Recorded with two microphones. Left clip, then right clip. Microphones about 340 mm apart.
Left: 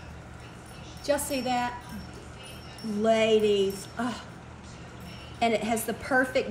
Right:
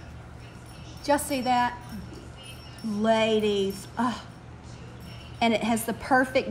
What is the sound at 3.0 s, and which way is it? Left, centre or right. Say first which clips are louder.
Speech: left 1 dB; centre.